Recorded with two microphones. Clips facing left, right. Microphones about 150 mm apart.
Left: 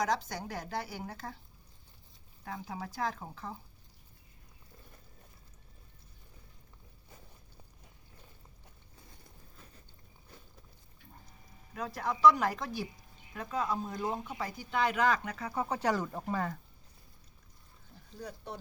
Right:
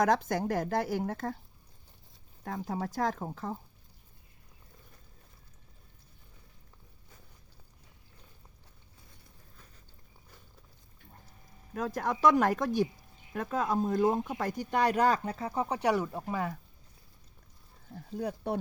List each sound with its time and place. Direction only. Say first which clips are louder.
0.0 s speech: right 6 dB; 50° right (ahead or behind)
2.4 s speech: right 6 dB; 45° right (ahead or behind)
11.7 s speech: right 4 dB; 45° right (ahead or behind); by 16.6 s 10° right (ahead or behind)
17.9 s speech: right 10 dB; 60° right (ahead or behind)